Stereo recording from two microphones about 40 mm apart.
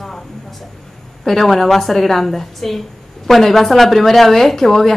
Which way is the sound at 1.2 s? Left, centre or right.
Centre.